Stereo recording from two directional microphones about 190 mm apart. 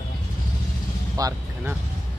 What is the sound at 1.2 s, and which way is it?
Speech, 20° right (ahead or behind).